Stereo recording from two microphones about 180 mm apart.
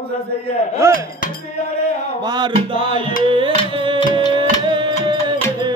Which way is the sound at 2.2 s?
25° right (ahead or behind).